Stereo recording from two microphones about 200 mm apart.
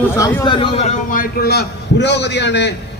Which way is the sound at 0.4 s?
25° left (ahead or behind).